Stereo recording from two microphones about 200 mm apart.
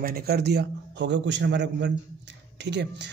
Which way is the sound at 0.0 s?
50° right (ahead or behind).